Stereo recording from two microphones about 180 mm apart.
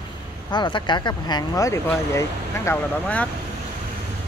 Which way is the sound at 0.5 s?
25° left (ahead or behind).